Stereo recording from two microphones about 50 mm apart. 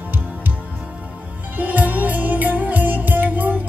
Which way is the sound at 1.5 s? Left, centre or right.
Right.